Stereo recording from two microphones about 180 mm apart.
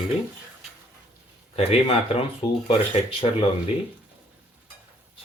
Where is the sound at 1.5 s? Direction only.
35° left (ahead or behind).